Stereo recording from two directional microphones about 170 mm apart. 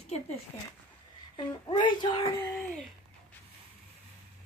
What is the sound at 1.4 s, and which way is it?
Speech, 30° left (ahead or behind).